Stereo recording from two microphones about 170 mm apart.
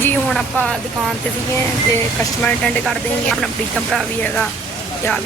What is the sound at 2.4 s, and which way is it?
Speech, 5° left (ahead or behind).